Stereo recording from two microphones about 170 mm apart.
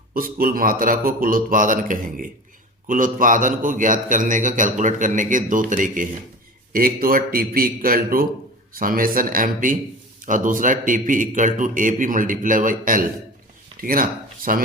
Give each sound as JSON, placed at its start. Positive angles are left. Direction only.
{"t": 0.1, "sound": "a man's voice", "side_deg": -55}